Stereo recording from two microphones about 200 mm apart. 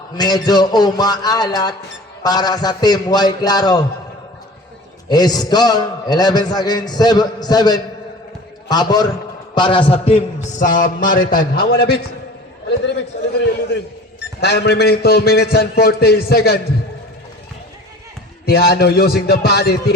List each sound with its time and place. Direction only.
0.2 s a man's voice: 20° left (ahead or behind)
5.0 s a man's voice: 20° left (ahead or behind); by 16.6 s 50° left (ahead or behind)
18.4 s a man's voice: 50° left (ahead or behind)